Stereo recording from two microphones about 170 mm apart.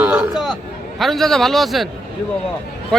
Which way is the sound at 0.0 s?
5° right (ahead or behind).